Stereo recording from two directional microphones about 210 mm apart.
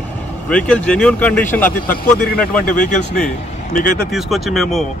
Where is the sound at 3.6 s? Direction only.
40° left (ahead or behind).